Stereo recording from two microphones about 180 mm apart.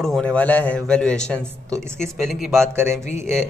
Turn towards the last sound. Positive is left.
turn(degrees=40)  # may be behind; listen again after turning